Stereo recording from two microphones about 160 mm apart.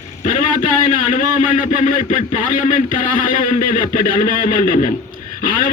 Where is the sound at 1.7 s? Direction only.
50° left (ahead or behind).